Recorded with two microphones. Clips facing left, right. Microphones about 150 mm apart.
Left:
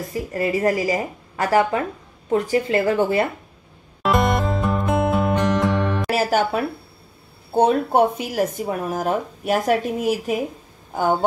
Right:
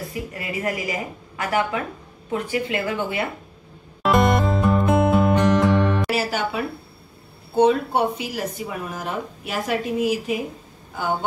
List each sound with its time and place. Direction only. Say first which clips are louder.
0.3 s speech: left 9 dB; 35° left (ahead or behind)
4.0 s music: right 1 dB; centre (ahead or behind)
6.0 s speech: left 4 dB; 45° left (ahead or behind)